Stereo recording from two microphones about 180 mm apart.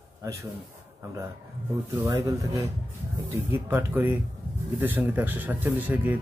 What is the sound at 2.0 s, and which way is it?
A man's voice, 20° right (ahead or behind).